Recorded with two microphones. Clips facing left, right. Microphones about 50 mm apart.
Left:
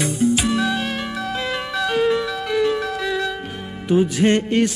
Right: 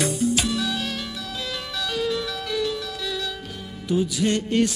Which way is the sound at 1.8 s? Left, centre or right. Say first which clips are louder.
Left 7 dB; left.